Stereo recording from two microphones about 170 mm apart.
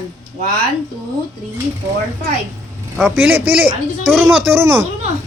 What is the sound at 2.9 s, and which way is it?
Speech, 10° right (ahead or behind).